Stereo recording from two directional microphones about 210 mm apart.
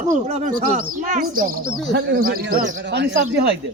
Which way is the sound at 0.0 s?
35° right (ahead or behind).